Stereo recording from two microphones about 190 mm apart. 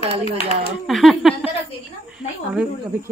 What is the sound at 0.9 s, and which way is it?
Speech, centre (ahead or behind).